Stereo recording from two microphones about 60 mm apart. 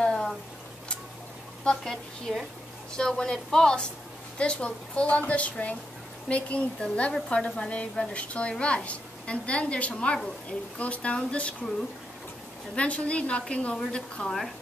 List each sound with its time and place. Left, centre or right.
0.0 s a sound: centre
1.6 s a woman's voice: centre
12.7 s a woman's voice: left